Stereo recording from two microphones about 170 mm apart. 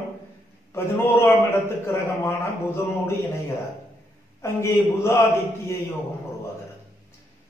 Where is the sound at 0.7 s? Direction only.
15° left (ahead or behind).